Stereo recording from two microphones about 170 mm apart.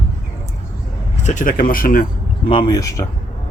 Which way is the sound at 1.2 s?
50° left (ahead or behind).